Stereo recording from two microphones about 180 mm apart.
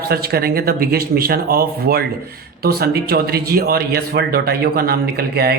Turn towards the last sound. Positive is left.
turn(degrees=-60)  # may be behind; listen again after turning